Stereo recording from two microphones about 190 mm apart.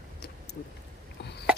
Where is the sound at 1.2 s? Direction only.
60° left (ahead or behind).